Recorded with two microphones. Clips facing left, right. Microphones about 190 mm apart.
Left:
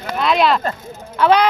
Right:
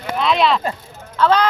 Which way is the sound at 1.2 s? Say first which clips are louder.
Left 2 dB; 15° left (ahead or behind).